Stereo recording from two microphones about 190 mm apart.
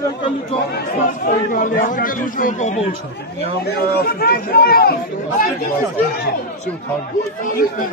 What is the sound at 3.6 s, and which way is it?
Speech, 55° left (ahead or behind).